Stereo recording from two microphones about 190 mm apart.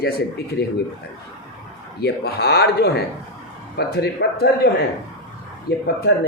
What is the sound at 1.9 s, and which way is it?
Speech, 55° left (ahead or behind).